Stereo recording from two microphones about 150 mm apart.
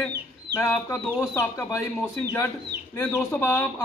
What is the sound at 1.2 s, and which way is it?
Speech, 15° left (ahead or behind).